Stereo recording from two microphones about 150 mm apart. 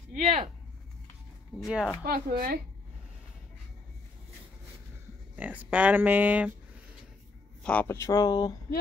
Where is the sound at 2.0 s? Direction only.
80° right.